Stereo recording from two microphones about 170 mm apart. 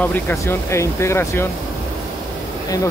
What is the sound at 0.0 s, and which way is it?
Speech, 15° left (ahead or behind).